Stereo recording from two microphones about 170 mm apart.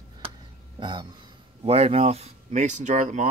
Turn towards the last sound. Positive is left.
turn(degrees=-45)  # may be behind; listen again after turning